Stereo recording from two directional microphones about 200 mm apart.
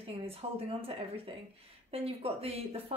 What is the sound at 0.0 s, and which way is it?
Speech, 30° right (ahead or behind).